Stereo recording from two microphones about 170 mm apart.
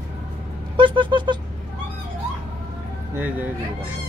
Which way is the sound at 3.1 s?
10° right (ahead or behind).